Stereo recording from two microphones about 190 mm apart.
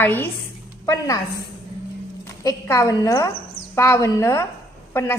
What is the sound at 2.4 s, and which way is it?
A woman's voice, 15° left (ahead or behind).